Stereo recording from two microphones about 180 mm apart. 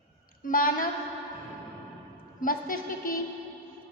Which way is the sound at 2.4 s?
50° left (ahead or behind).